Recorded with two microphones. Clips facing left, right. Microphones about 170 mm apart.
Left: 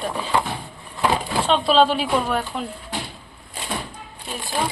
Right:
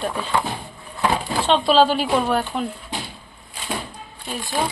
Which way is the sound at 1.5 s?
Centre (ahead or behind).